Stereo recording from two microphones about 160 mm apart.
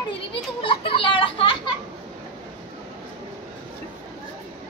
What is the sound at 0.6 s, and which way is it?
Children playing, 35° left (ahead or behind).